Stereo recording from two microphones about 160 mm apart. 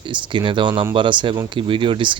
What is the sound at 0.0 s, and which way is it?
Speech, 30° right (ahead or behind).